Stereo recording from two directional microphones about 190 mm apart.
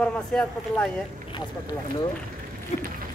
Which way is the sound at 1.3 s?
25° left (ahead or behind).